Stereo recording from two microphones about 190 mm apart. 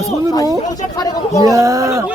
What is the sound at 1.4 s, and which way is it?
Speech, 15° right (ahead or behind).